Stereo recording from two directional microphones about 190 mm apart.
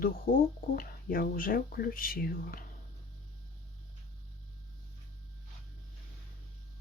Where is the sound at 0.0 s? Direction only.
50° left (ahead or behind).